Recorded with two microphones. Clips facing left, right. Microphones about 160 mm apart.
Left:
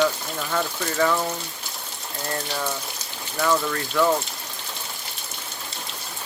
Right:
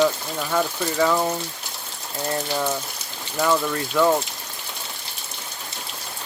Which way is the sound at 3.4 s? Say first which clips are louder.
Right 1 dB; 10° right (ahead or behind).